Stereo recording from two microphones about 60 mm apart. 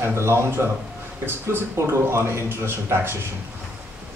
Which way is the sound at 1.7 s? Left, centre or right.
Right.